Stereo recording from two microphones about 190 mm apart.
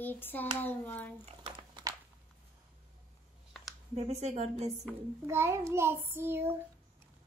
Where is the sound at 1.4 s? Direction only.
20° right (ahead or behind).